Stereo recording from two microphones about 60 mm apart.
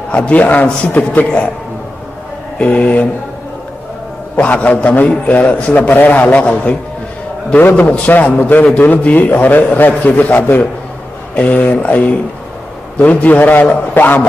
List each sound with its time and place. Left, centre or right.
0.1 s a man's voice: left
2.6 s a man's voice: left
4.4 s a man's voice: left